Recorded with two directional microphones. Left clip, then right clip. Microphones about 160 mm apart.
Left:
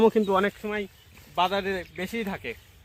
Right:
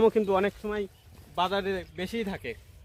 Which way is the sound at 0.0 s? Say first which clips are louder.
Left 2 dB; 70° left (ahead or behind).